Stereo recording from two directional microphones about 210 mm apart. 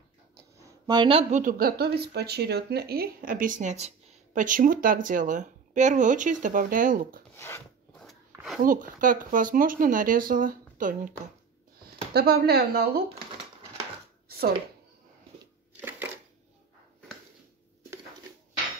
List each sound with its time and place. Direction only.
0.8 s a woman's voice: 25° right (ahead or behind)
1.4 s speech: 45° right (ahead or behind)
7.3 s filing: 15° left (ahead or behind)
8.0 s a sound: centre (ahead or behind)
8.6 s speech: 40° right (ahead or behind)
15.8 s a sound: 10° right (ahead or behind)